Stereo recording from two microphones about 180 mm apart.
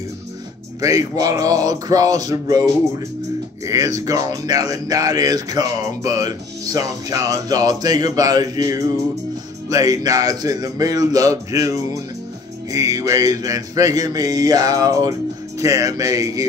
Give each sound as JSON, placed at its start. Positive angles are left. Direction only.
{"t": 0.7, "sound": "speech", "side_deg": -20}